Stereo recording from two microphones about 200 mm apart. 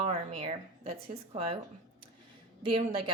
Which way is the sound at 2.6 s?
25° right (ahead or behind).